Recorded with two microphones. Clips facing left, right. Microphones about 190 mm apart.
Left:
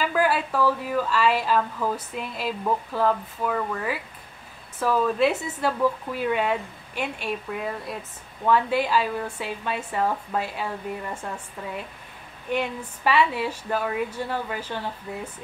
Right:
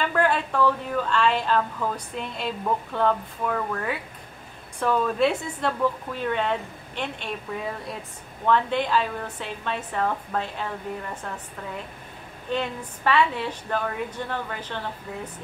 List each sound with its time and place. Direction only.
0.0 s speech: 5° left (ahead or behind)
12.4 s speech: 10° left (ahead or behind)